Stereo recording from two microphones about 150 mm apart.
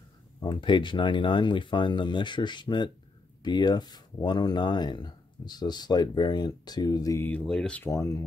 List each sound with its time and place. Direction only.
0.4 s speech: 35° left (ahead or behind)
7.2 s speech: 5° left (ahead or behind)
7.9 s speech: 20° left (ahead or behind)